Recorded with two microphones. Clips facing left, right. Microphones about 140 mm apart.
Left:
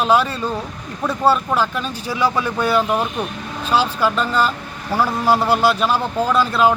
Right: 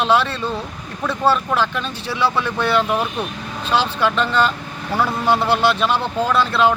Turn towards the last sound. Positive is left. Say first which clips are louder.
# left 1 dB
turn(degrees=10)  # may be behind; listen again after turning